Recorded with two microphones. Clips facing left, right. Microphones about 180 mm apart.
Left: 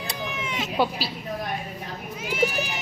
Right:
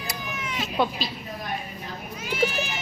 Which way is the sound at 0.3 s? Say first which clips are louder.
Right 1 dB; 25° left (ahead or behind).